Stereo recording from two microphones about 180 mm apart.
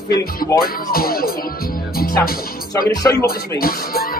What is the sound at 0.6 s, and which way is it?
Music, 55° left (ahead or behind).